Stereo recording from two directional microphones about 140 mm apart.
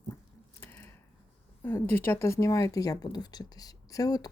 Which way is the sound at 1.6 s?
15° left (ahead or behind).